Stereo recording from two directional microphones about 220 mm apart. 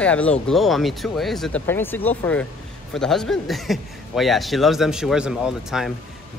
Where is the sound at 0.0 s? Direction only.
5° left (ahead or behind).